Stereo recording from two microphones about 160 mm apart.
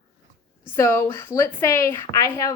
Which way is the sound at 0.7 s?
15° left (ahead or behind).